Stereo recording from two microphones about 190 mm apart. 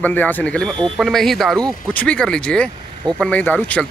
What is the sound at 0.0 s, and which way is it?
Speech, 10° left (ahead or behind).